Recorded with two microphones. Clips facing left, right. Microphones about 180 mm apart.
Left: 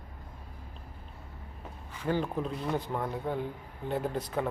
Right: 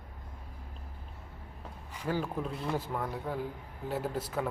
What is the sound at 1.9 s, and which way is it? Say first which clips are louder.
Speech: left 3 dB; 10° right (ahead or behind).